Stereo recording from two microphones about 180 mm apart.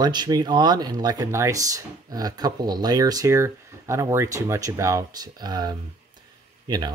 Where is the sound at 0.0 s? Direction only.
25° right (ahead or behind).